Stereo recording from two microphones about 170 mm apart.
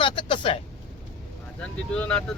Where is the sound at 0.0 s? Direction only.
30° left (ahead or behind).